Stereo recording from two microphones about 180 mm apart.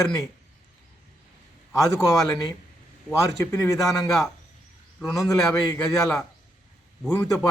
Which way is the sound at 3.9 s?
Centre (ahead or behind).